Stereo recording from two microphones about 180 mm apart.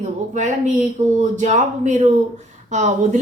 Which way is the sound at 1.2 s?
40° right (ahead or behind).